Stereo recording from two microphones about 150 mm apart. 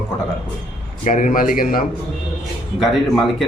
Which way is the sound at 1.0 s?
60° left (ahead or behind).